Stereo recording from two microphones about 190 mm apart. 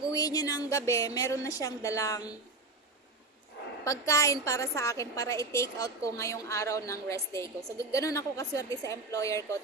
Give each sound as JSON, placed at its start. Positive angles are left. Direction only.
{"t": 0.1, "sound": "a woman's voice", "side_deg": 20}
{"t": 3.8, "sound": "a woman's voice", "side_deg": 15}